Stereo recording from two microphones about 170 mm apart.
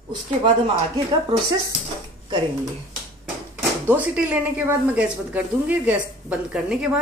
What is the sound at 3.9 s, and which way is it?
A woman's voice, 10° right (ahead or behind).